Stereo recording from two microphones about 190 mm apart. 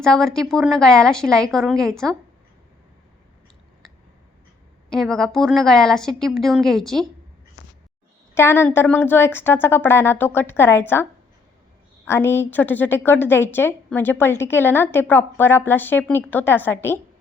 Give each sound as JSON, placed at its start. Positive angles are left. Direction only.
{"t": 0.0, "sound": "a woman's voice", "side_deg": 0}
{"t": 4.9, "sound": "a woman's voice", "side_deg": 5}
{"t": 8.4, "sound": "a woman's voice", "side_deg": 15}
{"t": 12.0, "sound": "a woman's voice", "side_deg": 10}